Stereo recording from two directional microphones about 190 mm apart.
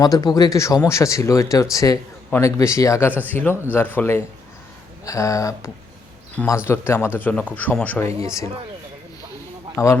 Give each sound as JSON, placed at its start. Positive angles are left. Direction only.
{"t": 0.0, "sound": "speech", "side_deg": 20}
{"t": 9.7, "sound": "speech", "side_deg": 15}